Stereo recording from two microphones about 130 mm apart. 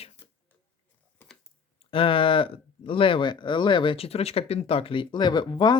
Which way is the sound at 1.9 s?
45° left (ahead or behind).